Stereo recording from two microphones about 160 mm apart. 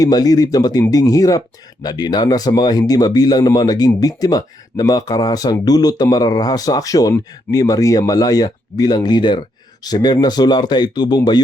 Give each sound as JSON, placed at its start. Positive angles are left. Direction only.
{"t": 0.0, "sound": "speech", "side_deg": 25}